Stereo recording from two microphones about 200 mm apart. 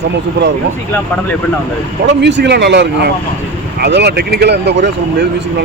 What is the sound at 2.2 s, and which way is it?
Speech, 60° right (ahead or behind).